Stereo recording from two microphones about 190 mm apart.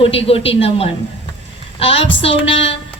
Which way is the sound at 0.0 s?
30° left (ahead or behind).